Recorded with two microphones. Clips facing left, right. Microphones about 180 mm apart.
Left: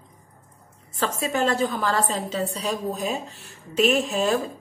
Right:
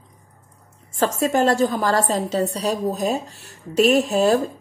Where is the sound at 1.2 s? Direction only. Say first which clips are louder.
Right 5 dB; 40° right (ahead or behind).